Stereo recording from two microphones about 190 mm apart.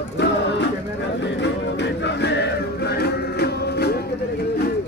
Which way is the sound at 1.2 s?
65° left (ahead or behind).